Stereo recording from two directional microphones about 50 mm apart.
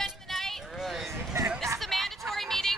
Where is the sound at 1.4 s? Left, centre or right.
Right.